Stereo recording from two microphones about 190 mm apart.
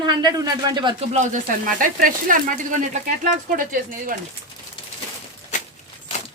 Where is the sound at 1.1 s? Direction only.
40° right (ahead or behind).